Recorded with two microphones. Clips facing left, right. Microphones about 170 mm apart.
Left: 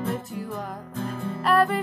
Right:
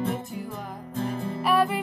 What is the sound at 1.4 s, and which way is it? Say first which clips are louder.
Music: left 2 dB; 5° right (ahead or behind).